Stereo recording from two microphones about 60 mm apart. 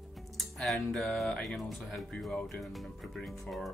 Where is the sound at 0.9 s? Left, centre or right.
Centre.